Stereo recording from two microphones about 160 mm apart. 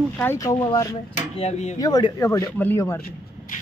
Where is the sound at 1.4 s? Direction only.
45° left (ahead or behind).